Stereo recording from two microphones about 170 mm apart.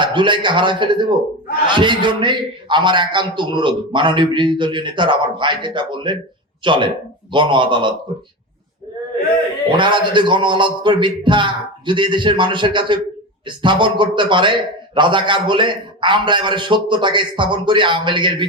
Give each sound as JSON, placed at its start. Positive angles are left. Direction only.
{"t": 0.0, "sound": "a man's voice", "side_deg": -30}
{"t": 9.7, "sound": "a man's voice", "side_deg": -30}